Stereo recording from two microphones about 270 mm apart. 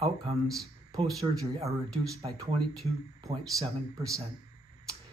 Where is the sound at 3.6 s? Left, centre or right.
Centre.